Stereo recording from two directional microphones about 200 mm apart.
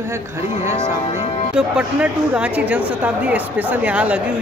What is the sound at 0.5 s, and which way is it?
Speech, 35° left (ahead or behind).